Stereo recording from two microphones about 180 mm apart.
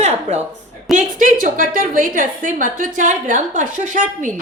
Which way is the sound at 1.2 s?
50° right (ahead or behind).